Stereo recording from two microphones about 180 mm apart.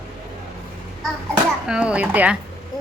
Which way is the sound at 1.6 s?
5° right (ahead or behind).